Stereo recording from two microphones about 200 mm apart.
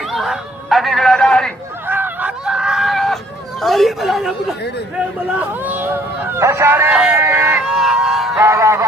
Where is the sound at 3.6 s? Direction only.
Centre (ahead or behind).